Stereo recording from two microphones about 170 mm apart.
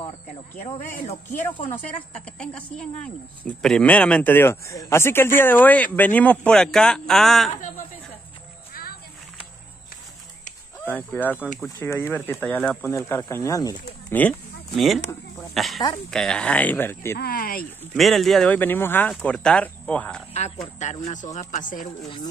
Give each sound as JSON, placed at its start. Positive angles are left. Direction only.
{"t": 1.0, "sound": "speech", "side_deg": 40}
{"t": 2.2, "sound": "speech", "side_deg": 5}
{"t": 10.9, "sound": "speech", "side_deg": 10}
{"t": 14.1, "sound": "speech", "side_deg": 5}
{"t": 17.2, "sound": "speech", "side_deg": 60}
{"t": 17.9, "sound": "speech", "side_deg": 0}
{"t": 20.8, "sound": "speech", "side_deg": 45}